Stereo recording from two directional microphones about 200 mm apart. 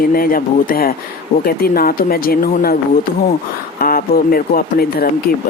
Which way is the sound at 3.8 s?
45° left (ahead or behind).